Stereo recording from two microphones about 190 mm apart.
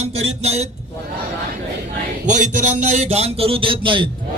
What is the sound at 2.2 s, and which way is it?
Speech, 40° right (ahead or behind).